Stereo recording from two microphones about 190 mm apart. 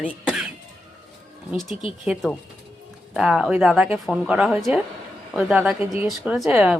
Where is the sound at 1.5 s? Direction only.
Centre (ahead or behind).